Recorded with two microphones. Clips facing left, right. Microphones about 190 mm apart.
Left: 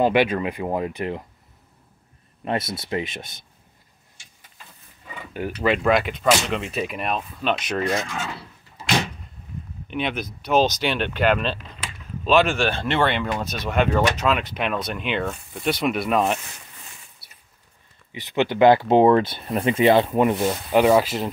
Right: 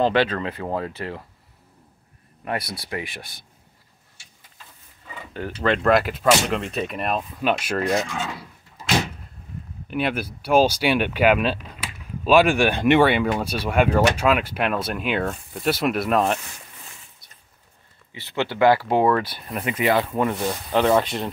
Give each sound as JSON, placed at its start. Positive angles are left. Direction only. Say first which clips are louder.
{"t": 0.0, "sound": "speech", "louder": "left 1 dB", "side_deg": 10}
{"t": 2.4, "sound": "speech", "louder": "left 3 dB", "side_deg": 25}
{"t": 5.6, "sound": "speech", "louder": "right 1 dB", "side_deg": 5}
{"t": 17.2, "sound": "a sound", "louder": "even", "side_deg": 10}
{"t": 18.1, "sound": "speech", "louder": "left 4 dB", "side_deg": 20}